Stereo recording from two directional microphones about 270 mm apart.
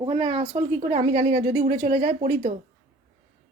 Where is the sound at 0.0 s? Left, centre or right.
Centre.